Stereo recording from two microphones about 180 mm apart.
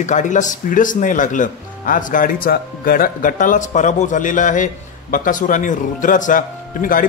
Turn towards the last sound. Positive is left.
turn(degrees=50)  # may be behind; listen again after turning